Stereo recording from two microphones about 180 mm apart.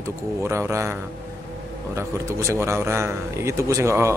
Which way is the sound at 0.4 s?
15° right (ahead or behind).